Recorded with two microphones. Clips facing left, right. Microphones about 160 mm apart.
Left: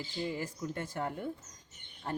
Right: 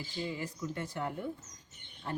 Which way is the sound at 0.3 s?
45° left (ahead or behind).